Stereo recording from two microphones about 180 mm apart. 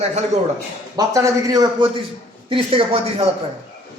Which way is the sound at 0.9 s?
20° right (ahead or behind).